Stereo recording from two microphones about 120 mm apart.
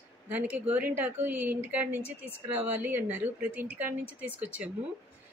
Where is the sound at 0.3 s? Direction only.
15° right (ahead or behind).